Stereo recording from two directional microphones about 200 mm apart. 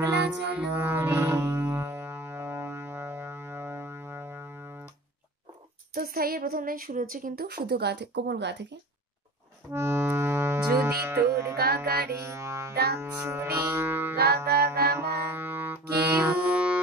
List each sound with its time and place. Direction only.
0.0 s music: 10° right (ahead or behind)
5.9 s a woman's voice: 45° right (ahead or behind)
9.7 s speech: 15° right (ahead or behind)
11.5 s a woman's voice: 50° right (ahead or behind)
12.2 s music: 15° right (ahead or behind)
12.7 s music: 50° right (ahead or behind)
13.0 s music: 10° right (ahead or behind)
14.1 s music: 50° right (ahead or behind)
15.0 s music: 10° right (ahead or behind)